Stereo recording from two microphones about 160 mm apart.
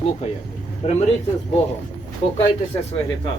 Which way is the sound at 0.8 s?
40° left (ahead or behind).